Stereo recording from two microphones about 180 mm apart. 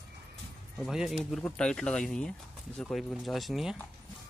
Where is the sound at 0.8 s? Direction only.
Centre (ahead or behind).